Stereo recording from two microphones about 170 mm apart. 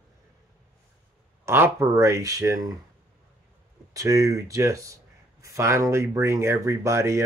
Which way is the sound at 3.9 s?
20° right (ahead or behind).